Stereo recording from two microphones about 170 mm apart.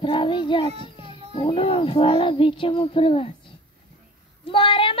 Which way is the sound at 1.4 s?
30° left (ahead or behind).